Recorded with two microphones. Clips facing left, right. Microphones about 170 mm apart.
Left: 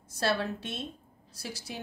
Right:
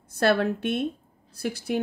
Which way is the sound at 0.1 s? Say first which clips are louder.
Right 8 dB; 60° right (ahead or behind).